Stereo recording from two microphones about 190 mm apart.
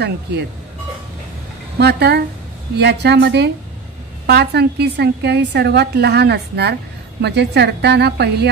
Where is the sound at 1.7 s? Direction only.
60° right (ahead or behind).